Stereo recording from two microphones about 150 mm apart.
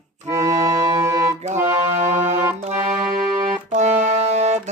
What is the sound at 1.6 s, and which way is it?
Music, 50° right (ahead or behind).